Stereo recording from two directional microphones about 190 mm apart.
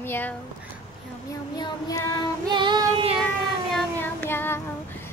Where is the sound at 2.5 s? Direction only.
25° right (ahead or behind).